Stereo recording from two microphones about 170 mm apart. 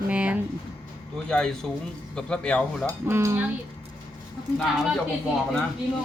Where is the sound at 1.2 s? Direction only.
5° left (ahead or behind).